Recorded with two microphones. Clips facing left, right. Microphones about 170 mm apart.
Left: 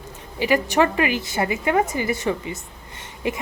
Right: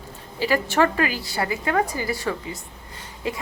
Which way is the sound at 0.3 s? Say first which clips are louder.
Left 2 dB; 15° left (ahead or behind).